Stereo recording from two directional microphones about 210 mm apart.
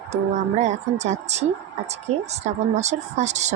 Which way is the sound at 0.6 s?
35° right (ahead or behind).